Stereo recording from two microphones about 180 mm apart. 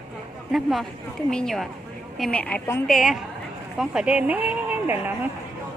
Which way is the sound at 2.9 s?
Centre (ahead or behind).